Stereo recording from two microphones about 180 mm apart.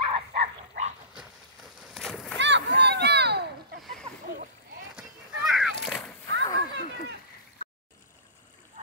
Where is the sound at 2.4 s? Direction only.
80° right.